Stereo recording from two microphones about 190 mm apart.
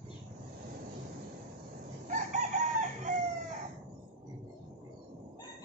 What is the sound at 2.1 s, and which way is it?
Chicken, 40° right (ahead or behind).